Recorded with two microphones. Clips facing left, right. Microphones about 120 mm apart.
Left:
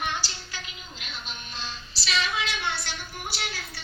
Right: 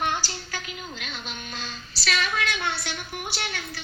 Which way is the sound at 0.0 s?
45° right (ahead or behind).